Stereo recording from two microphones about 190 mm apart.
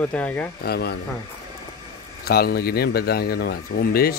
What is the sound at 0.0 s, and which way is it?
Speech, 5° left (ahead or behind).